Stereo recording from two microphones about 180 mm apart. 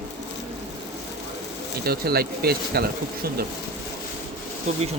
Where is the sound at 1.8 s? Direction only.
60° right (ahead or behind).